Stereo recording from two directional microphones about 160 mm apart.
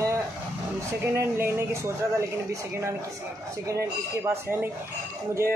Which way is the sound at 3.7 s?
20° right (ahead or behind).